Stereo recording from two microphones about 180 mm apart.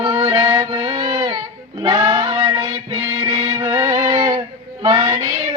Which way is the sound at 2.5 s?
25° right (ahead or behind).